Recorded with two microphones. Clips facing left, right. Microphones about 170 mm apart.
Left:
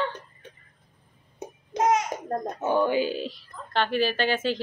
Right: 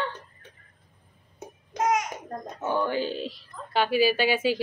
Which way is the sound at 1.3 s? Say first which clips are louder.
Left 3 dB; 20° left (ahead or behind).